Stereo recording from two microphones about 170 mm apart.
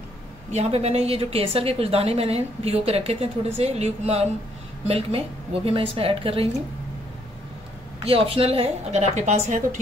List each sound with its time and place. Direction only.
0.5 s a woman's voice: 40° right (ahead or behind)
8.0 s a woman's voice: 35° right (ahead or behind)